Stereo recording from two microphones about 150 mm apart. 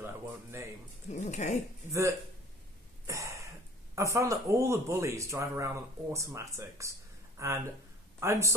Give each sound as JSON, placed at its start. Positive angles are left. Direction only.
{"t": 0.0, "sound": "speech", "side_deg": -15}
{"t": 1.1, "sound": "speech", "side_deg": 55}
{"t": 1.9, "sound": "speech", "side_deg": -20}
{"t": 3.1, "sound": "throat clearing", "side_deg": -20}
{"t": 3.9, "sound": "speech", "side_deg": -20}